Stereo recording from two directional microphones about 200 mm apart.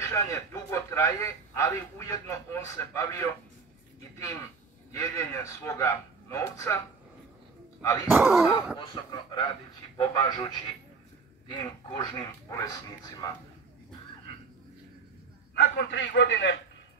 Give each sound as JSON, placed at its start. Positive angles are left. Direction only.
{"t": 0.0, "sound": "speech", "side_deg": 15}
{"t": 4.9, "sound": "speech", "side_deg": 15}
{"t": 8.1, "sound": "speech", "side_deg": -10}
{"t": 8.7, "sound": "speech", "side_deg": 25}
{"t": 15.5, "sound": "a man's voice", "side_deg": 60}